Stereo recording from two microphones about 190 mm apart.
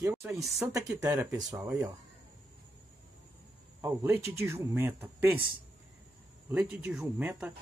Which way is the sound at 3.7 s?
15° right (ahead or behind).